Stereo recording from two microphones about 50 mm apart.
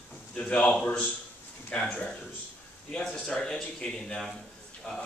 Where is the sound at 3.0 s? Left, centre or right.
Centre.